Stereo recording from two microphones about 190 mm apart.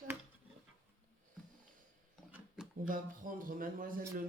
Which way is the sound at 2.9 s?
45° right (ahead or behind).